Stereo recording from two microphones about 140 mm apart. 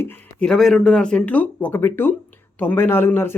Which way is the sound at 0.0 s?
10° left (ahead or behind).